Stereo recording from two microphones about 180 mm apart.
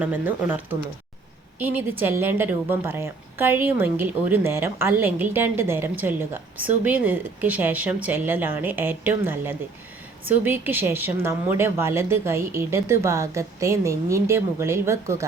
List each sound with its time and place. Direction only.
0.0 s a woman's voice: 10° right (ahead or behind)